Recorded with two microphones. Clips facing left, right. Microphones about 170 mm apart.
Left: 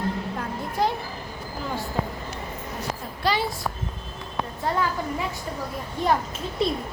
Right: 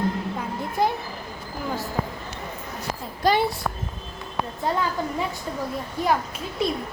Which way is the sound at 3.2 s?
45° right (ahead or behind).